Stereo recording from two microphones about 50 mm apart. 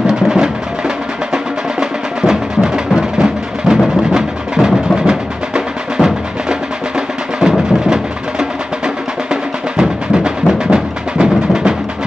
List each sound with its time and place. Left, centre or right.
0.0 s music: centre